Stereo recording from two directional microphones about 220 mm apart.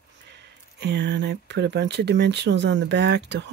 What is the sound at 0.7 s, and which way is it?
Speech, 50° right (ahead or behind).